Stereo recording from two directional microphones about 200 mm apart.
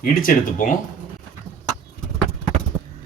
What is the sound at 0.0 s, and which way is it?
Speech, 45° left (ahead or behind).